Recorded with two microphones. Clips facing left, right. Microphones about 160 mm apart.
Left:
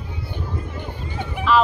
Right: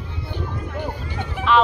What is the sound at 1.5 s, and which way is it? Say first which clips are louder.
Speech: even; centre (ahead or behind).